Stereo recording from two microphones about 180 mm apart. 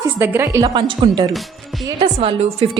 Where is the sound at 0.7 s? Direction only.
30° right (ahead or behind).